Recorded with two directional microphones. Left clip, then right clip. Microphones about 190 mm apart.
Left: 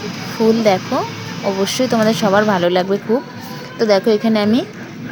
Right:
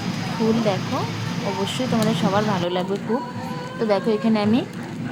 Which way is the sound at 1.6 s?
25° left (ahead or behind).